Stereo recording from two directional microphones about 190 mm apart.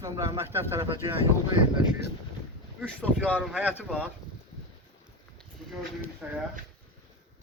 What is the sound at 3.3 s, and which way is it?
Speech, 5° right (ahead or behind).